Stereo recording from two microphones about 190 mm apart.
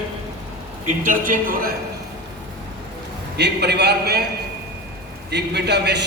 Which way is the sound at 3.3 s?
60° right (ahead or behind).